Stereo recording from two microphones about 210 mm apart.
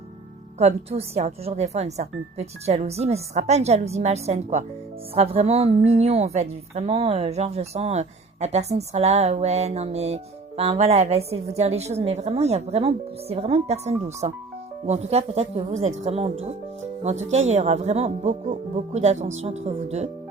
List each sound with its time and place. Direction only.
0.6 s a woman's voice: 30° right (ahead or behind)